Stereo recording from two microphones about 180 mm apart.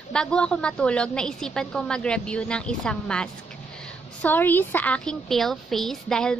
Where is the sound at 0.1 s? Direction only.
5° left (ahead or behind).